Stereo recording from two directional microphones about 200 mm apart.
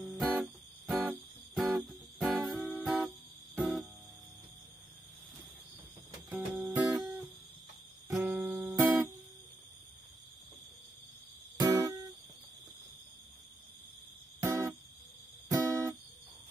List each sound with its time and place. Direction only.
0.0 s music: 5° right (ahead or behind)
6.3 s music: 10° right (ahead or behind)
11.6 s music: 20° right (ahead or behind)
14.4 s music: 15° right (ahead or behind)